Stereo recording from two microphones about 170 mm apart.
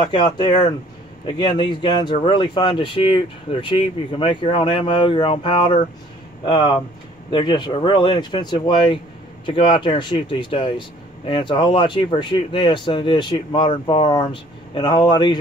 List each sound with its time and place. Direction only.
0.0 s speech: 25° left (ahead or behind)